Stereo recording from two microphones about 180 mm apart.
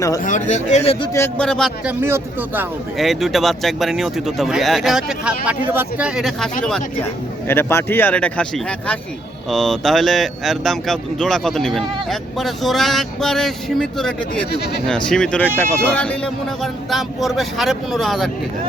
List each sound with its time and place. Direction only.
0.3 s speech: 40° left (ahead or behind)
1.1 s speech: 10° left (ahead or behind)
2.0 s speech: 15° right (ahead or behind)
3.0 s speech: centre (ahead or behind)